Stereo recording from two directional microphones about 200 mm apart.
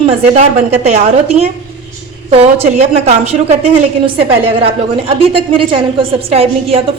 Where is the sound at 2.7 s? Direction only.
35° right (ahead or behind).